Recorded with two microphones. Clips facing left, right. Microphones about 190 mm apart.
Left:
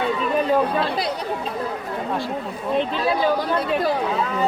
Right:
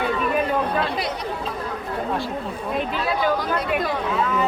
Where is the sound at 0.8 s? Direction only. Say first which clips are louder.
Left 1 dB; 35° left (ahead or behind).